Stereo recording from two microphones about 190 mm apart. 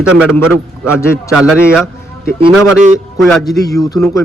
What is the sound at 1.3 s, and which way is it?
A man's voice, 5° right (ahead or behind).